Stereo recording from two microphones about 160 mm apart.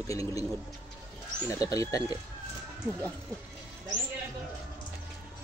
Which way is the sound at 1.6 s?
20° left (ahead or behind).